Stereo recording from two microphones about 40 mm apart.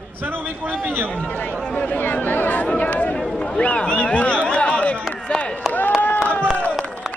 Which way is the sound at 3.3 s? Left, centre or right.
Left.